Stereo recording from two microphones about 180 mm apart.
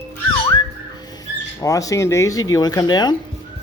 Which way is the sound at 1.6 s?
20° left (ahead or behind).